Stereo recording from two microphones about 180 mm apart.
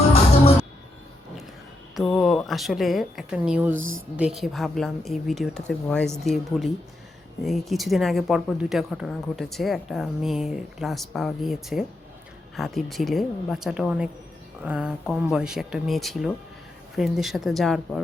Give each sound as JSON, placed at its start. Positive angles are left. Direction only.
{"t": 2.0, "sound": "speech", "side_deg": 0}
{"t": 3.8, "sound": "speech", "side_deg": -90}
{"t": 4.2, "sound": "speech", "side_deg": 0}